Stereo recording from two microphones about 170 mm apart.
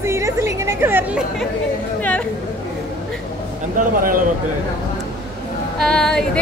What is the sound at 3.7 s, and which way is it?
Speech, 55° right (ahead or behind).